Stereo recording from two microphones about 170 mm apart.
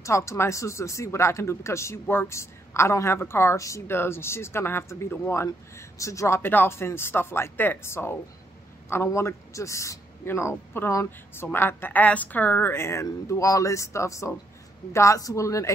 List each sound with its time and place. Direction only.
0.0 s speech: 15° left (ahead or behind)